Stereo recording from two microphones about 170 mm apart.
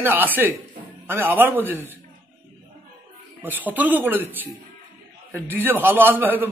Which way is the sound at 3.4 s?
10° right (ahead or behind).